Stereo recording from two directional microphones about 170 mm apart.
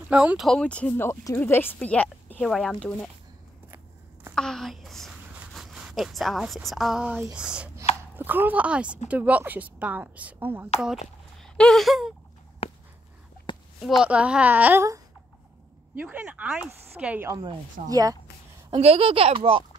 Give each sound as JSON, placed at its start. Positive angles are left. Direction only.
{"t": 0.1, "sound": "speech", "side_deg": -5}
{"t": 4.4, "sound": "a woman's voice", "side_deg": 0}
{"t": 11.4, "sound": "a sound", "side_deg": 5}
{"t": 12.6, "sound": "a sound", "side_deg": 35}
{"t": 13.7, "sound": "a woman's voice", "side_deg": 0}
{"t": 16.0, "sound": "a woman's voice", "side_deg": -10}
{"t": 17.3, "sound": "speech", "side_deg": -20}
{"t": 18.7, "sound": "speech", "side_deg": -35}